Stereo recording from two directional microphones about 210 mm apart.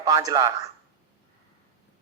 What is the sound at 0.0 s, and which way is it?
Speech, 20° right (ahead or behind).